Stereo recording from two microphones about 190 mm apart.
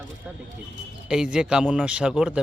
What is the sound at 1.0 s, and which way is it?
A man's voice, 5° right (ahead or behind).